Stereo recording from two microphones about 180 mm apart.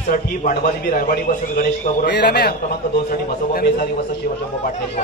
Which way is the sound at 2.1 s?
65° left (ahead or behind).